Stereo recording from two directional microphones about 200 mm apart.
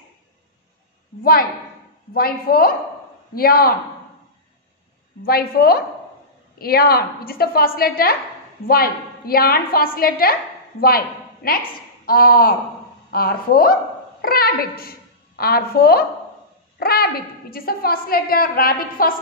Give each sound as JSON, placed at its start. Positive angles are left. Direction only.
{"t": 2.1, "sound": "a woman's voice", "side_deg": 50}
{"t": 5.2, "sound": "a woman's voice", "side_deg": 50}